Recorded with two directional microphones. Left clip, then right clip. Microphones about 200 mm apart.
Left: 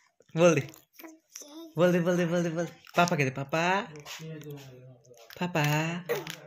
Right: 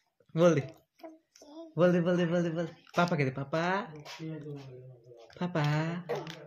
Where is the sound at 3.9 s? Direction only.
10° right (ahead or behind).